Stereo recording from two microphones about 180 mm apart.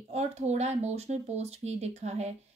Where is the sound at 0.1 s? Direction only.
35° right (ahead or behind).